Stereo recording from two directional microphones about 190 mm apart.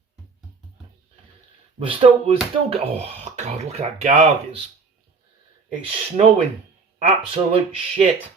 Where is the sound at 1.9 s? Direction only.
30° right (ahead or behind).